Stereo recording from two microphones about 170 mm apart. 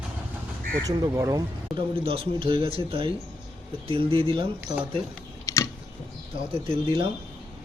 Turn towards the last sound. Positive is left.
turn(degrees=-30)  # may be behind; listen again after turning